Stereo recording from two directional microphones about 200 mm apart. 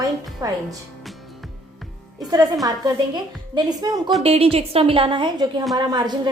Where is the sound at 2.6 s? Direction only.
20° right (ahead or behind).